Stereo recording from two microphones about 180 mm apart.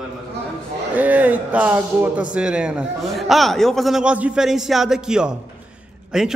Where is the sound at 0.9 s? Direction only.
10° right (ahead or behind).